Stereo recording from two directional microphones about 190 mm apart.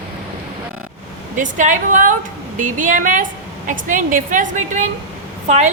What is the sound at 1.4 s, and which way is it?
A woman's voice, 40° right (ahead or behind).